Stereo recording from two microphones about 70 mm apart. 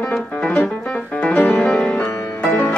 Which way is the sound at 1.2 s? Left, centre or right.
Left.